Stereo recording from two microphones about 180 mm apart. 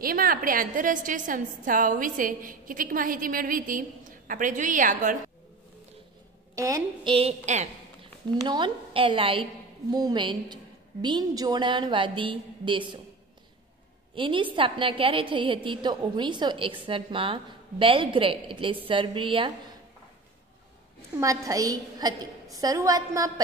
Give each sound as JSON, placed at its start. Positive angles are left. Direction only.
{"t": 0.0, "sound": "a woman's voice", "side_deg": -55}
{"t": 6.5, "sound": "a woman's voice", "side_deg": -20}
{"t": 7.2, "sound": "a woman's voice", "side_deg": -35}
{"t": 8.0, "sound": "a woman's voice", "side_deg": -25}
{"t": 14.1, "sound": "a woman's voice", "side_deg": -30}
{"t": 21.2, "sound": "a woman's voice", "side_deg": -20}